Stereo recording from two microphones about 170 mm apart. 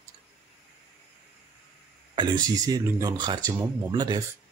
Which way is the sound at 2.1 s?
25° right (ahead or behind).